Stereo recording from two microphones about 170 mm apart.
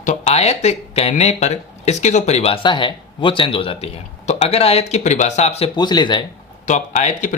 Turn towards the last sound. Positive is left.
turn(degrees=45)  # may be behind; listen again after turning